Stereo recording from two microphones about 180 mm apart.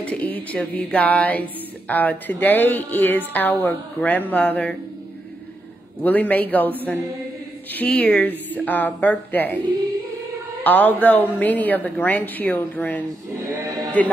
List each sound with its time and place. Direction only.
0.0 s speech: 10° left (ahead or behind)
6.0 s speech: 10° left (ahead or behind)
7.7 s speech: 10° left (ahead or behind)
10.6 s speech: 10° left (ahead or behind)
13.3 s music: 15° right (ahead or behind)